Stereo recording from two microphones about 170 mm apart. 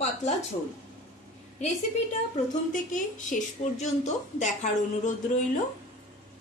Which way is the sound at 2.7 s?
50° left (ahead or behind).